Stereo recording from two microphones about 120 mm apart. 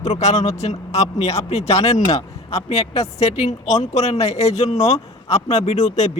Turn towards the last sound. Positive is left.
turn(degrees=70)  # may be behind; listen again after turning